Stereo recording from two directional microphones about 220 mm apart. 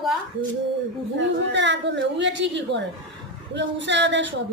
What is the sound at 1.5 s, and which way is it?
Speech, 55° right (ahead or behind).